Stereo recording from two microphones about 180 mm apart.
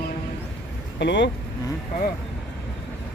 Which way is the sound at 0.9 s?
75° left (ahead or behind).